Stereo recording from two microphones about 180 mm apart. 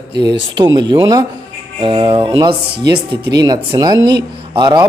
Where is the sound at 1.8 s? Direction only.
30° right (ahead or behind).